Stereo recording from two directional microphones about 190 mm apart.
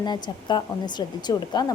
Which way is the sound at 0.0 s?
25° left (ahead or behind).